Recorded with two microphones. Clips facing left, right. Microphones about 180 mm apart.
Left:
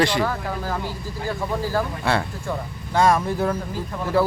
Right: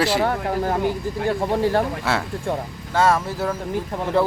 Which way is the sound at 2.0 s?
Centre (ahead or behind).